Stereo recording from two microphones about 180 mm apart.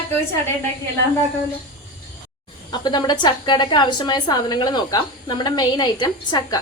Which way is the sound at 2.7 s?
25° left (ahead or behind).